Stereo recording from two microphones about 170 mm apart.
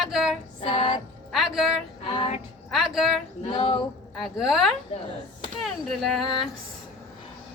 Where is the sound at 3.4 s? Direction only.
35° left (ahead or behind).